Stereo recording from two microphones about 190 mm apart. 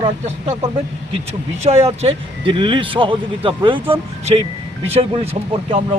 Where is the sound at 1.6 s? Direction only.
35° right (ahead or behind).